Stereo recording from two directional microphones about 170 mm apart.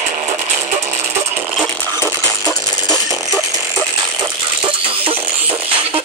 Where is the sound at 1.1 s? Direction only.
10° right (ahead or behind).